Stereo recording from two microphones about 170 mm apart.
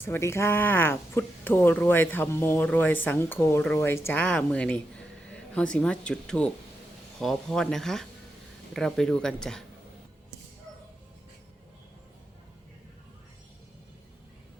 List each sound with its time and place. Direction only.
0.0 s speech: 15° left (ahead or behind)